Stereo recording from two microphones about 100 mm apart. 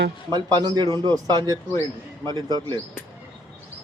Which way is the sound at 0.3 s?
40° right (ahead or behind).